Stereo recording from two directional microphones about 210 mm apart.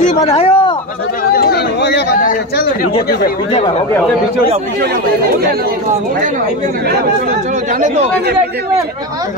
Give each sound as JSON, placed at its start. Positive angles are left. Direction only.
{"t": 0.4, "sound": "speech", "side_deg": 25}
{"t": 1.3, "sound": "speech", "side_deg": 50}
{"t": 7.8, "sound": "speech", "side_deg": -35}